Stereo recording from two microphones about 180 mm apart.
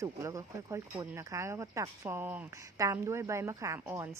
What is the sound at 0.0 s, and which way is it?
Speech, 15° right (ahead or behind).